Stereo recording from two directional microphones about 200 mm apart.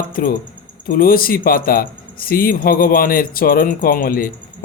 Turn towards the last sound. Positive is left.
turn(degrees=45)  # may be behind; listen again after turning